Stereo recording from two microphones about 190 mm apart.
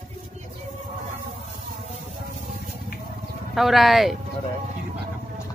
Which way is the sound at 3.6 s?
Centre (ahead or behind).